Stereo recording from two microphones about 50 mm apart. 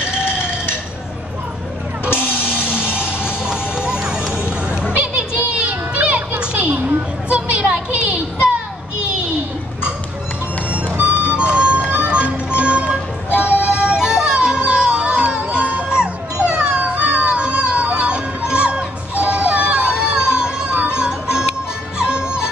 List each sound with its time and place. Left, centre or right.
2.1 s music: right
4.9 s children playing: right
6.4 s a sound: right
11.0 s music: right